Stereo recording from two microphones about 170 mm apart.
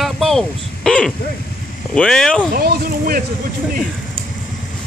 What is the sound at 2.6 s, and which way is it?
Speech, 60° right (ahead or behind).